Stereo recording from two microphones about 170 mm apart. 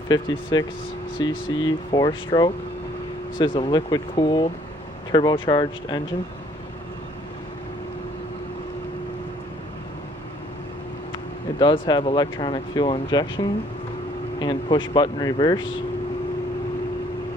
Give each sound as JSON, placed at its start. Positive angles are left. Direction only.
{"t": 0.1, "sound": "speech", "side_deg": 25}
{"t": 11.6, "sound": "speech", "side_deg": 30}